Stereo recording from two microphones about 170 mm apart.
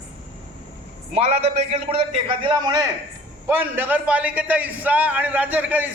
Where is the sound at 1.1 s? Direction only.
35° right (ahead or behind).